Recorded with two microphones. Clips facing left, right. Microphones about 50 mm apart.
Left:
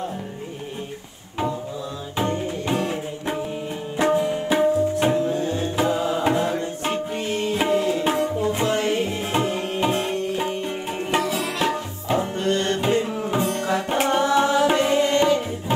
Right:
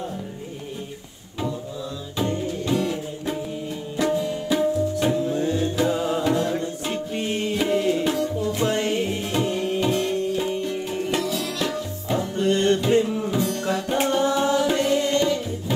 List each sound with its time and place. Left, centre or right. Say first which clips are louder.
2.1 s music: left 1 dB; left
7.5 s tabla: left 1 dB; left